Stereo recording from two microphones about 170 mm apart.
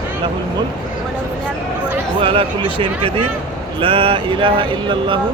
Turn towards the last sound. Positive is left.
turn(degrees=-30)  # may be behind; listen again after turning